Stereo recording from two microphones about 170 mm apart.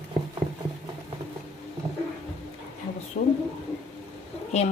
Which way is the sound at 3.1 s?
50° left (ahead or behind).